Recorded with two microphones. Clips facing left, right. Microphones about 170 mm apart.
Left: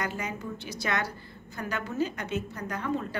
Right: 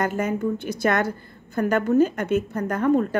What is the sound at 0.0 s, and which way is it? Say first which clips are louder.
A woman's voice: right 10 dB; 50° right (ahead or behind).